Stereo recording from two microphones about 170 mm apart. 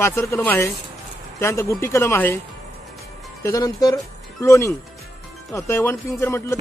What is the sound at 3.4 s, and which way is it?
Speech, 20° left (ahead or behind).